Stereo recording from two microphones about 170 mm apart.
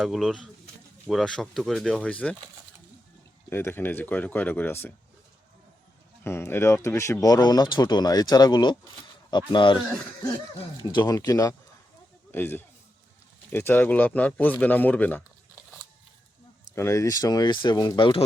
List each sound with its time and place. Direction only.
0.0 s speech: centre (ahead or behind)
3.5 s speech: 15° left (ahead or behind)
6.2 s speech: 15° left (ahead or behind)
16.7 s speech: 15° left (ahead or behind)